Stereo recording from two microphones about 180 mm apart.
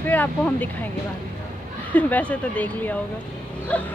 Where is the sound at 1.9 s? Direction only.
10° left (ahead or behind).